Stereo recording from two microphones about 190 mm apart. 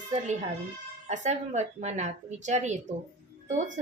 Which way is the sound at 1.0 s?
40° right (ahead or behind).